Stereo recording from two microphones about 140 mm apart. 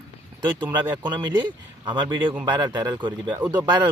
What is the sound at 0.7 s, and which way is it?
Speech, 30° right (ahead or behind).